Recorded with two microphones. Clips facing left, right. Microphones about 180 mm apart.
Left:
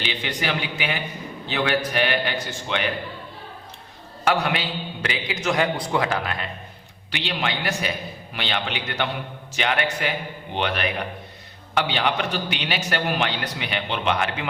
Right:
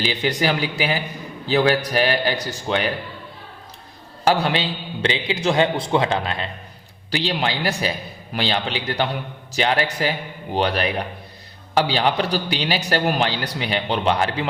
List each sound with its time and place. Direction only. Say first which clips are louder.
0.0 s a man's voice: right 6 dB; 40° right (ahead or behind)
4.2 s a man's voice: right 3 dB; 30° right (ahead or behind)